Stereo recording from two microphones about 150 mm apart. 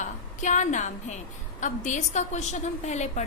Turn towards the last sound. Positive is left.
turn(degrees=50)  # may be behind; listen again after turning